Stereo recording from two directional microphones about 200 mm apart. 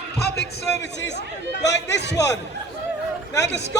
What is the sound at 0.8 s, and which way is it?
A man's voice, 60° left (ahead or behind).